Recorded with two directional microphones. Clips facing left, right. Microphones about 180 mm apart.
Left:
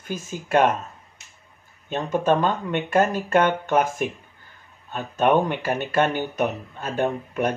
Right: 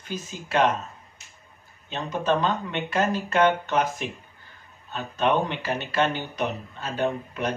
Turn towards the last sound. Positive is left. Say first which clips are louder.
# left 3 dB
turn(degrees=50)  # may be behind; listen again after turning